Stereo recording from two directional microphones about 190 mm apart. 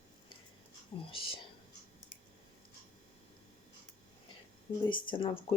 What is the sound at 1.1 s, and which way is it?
Speech, 30° left (ahead or behind).